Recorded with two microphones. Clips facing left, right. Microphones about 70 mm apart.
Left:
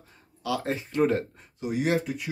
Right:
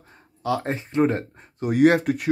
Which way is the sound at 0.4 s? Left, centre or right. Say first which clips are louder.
Right 4 dB; right.